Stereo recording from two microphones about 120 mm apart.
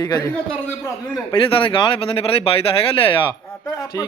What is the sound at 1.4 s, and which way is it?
Speech, 45° left (ahead or behind).